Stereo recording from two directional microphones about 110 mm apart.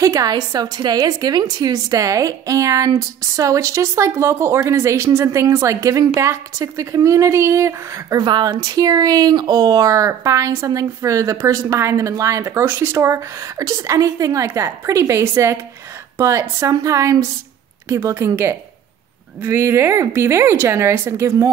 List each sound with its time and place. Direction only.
0.0 s a woman's voice: 35° right (ahead or behind)
8.2 s speech: 40° right (ahead or behind); by 21.5 s 25° right (ahead or behind)